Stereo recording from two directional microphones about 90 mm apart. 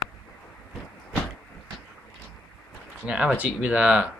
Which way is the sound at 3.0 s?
15° right (ahead or behind).